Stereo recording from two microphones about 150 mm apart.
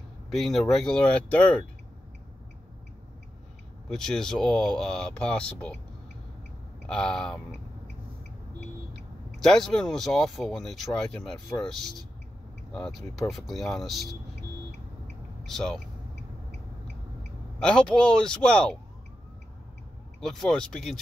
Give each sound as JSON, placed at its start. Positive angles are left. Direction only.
{"t": 0.3, "sound": "speech", "side_deg": 0}
{"t": 3.9, "sound": "speech", "side_deg": 5}
{"t": 6.9, "sound": "speech", "side_deg": 5}
{"t": 9.4, "sound": "speech", "side_deg": 5}
{"t": 15.4, "sound": "speech", "side_deg": 5}
{"t": 17.6, "sound": "speech", "side_deg": 5}
{"t": 20.2, "sound": "speech", "side_deg": 5}